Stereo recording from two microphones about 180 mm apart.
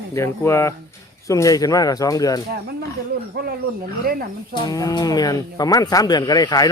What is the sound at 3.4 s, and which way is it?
Speech, 65° right (ahead or behind).